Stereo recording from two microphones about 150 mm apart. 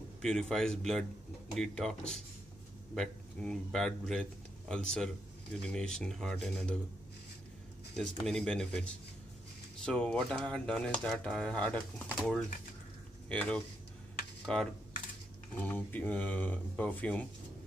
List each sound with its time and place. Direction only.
0.2 s speech: 5° left (ahead or behind)
8.3 s speech: 5° left (ahead or behind)